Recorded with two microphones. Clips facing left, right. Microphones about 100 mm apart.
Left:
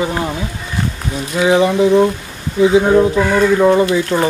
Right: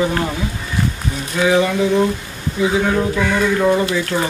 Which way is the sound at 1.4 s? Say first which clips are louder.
Left 3 dB; 25° left (ahead or behind).